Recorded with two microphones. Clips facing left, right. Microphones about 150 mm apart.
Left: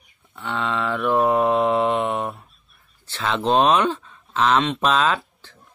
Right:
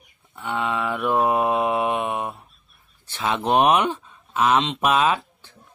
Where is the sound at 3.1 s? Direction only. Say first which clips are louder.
Left 1 dB; 15° right (ahead or behind).